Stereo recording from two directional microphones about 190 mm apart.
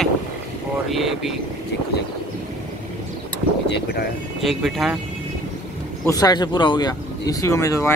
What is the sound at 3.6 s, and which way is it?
Speech, 60° left (ahead or behind).